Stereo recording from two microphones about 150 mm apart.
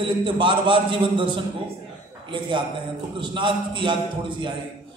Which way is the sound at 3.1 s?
30° right (ahead or behind).